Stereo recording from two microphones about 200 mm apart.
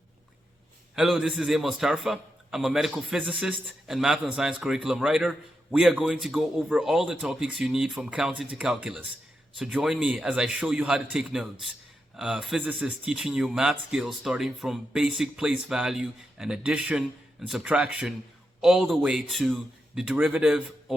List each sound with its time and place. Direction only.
0.9 s a man's voice: centre (ahead or behind)